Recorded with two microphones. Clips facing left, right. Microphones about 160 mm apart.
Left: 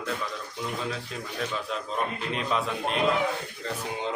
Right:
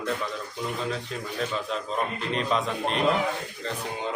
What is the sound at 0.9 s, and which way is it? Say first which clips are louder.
Speech: right 3 dB; centre (ahead or behind).